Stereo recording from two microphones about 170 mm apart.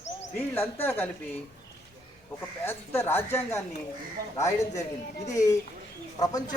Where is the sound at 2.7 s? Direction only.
15° left (ahead or behind).